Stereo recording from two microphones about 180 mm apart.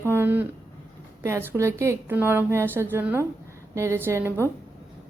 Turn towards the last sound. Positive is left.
turn(degrees=-15)  # may be behind; listen again after turning